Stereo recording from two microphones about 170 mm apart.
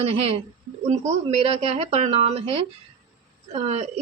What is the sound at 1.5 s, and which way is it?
A woman's voice, 35° right (ahead or behind).